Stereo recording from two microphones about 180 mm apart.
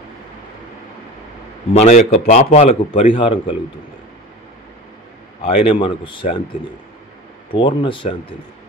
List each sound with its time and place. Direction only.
1.7 s a man's voice: 40° left (ahead or behind)
5.4 s a man's voice: 30° left (ahead or behind)
7.5 s a man's voice: 25° left (ahead or behind)